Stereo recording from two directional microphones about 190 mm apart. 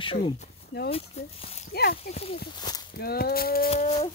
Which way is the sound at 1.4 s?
30° left (ahead or behind).